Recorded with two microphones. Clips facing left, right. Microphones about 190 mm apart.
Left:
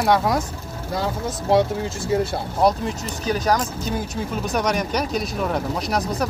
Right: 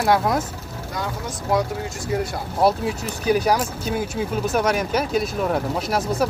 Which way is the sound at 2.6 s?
10° right (ahead or behind).